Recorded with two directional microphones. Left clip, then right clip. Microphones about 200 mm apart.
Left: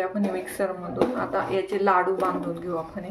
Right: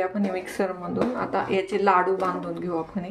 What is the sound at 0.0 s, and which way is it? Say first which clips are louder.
Speech: right 1 dB; 30° right (ahead or behind).